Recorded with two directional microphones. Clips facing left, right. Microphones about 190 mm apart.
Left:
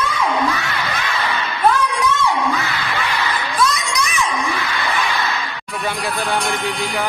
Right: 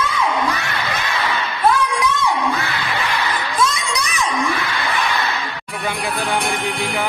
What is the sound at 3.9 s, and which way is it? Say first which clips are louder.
Crowd: left 2 dB; 35° right (ahead or behind).